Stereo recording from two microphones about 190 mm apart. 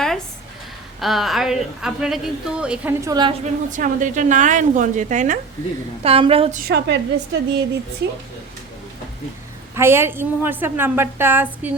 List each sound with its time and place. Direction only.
1.0 s a woman's voice: centre (ahead or behind)
3.0 s a woman's voice: 20° right (ahead or behind)
3.4 s a woman's voice: 40° right (ahead or behind)
6.0 s a woman's voice: 30° right (ahead or behind)
6.6 s a woman's voice: 60° right (ahead or behind)
9.7 s a woman's voice: 10° right (ahead or behind)